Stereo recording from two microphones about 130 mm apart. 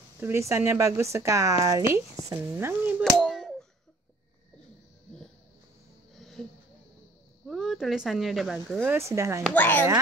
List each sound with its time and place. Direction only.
0.2 s speech: 20° right (ahead or behind)
3.0 s a sound: centre (ahead or behind)
6.1 s a sound: centre (ahead or behind)
7.4 s speech: centre (ahead or behind)
8.8 s speech: 20° right (ahead or behind)
9.5 s speech: 15° left (ahead or behind)